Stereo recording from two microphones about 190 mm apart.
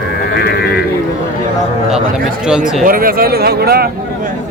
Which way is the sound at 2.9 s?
50° right (ahead or behind).